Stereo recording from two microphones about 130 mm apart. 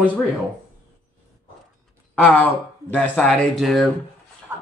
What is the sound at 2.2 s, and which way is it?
Speech, 15° left (ahead or behind).